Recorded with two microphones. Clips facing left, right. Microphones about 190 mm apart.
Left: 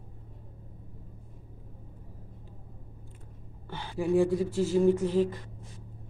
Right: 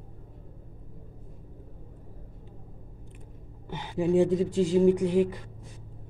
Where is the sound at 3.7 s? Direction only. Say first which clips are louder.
Right 3 dB; 20° right (ahead or behind).